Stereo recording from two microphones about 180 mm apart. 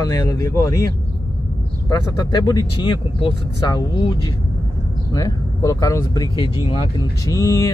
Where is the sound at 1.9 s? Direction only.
20° left (ahead or behind).